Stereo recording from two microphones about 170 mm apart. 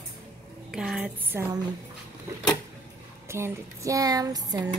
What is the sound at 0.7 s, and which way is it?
Speech, 5° right (ahead or behind).